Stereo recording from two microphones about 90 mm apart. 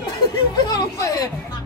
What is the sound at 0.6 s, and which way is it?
Speech, 45° left (ahead or behind).